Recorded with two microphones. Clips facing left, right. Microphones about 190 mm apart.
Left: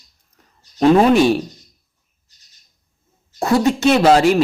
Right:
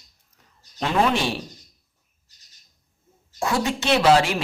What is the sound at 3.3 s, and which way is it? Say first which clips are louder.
Speech: left 8 dB; 40° left (ahead or behind).